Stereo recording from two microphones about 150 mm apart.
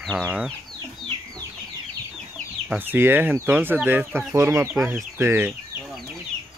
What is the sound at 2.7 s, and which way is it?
Speech, 15° right (ahead or behind).